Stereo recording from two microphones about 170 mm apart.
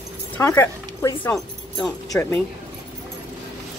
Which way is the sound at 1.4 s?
Centre (ahead or behind).